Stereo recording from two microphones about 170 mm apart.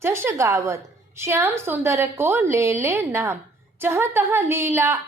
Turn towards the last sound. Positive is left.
turn(degrees=-15)  # may be behind; listen again after turning